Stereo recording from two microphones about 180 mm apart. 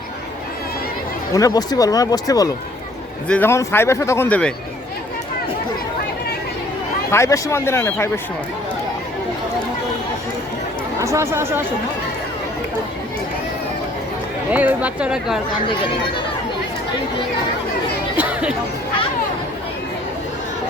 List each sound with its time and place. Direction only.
1.3 s speech: 20° left (ahead or behind)
3.2 s a man's voice: 10° left (ahead or behind)
7.1 s a man's voice: 15° left (ahead or behind)
11.0 s speech: 15° right (ahead or behind)
14.5 s speech: 10° right (ahead or behind)
18.2 s chatter: 5° right (ahead or behind)